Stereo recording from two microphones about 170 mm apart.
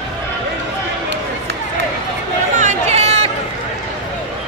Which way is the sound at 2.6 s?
40° right (ahead or behind).